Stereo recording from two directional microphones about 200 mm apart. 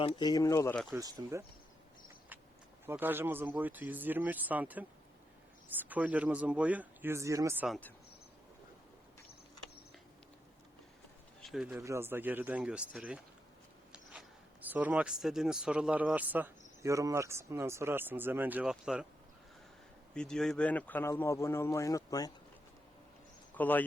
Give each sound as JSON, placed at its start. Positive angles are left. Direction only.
{"t": 0.0, "sound": "speech", "side_deg": 25}
{"t": 0.9, "sound": "speech", "side_deg": -15}
{"t": 2.8, "sound": "speech", "side_deg": -10}
{"t": 11.4, "sound": "speech", "side_deg": -5}
{"t": 20.1, "sound": "speech", "side_deg": 5}
{"t": 23.6, "sound": "speech", "side_deg": 10}